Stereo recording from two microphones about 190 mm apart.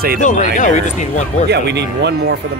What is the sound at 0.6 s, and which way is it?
Speech, 40° left (ahead or behind).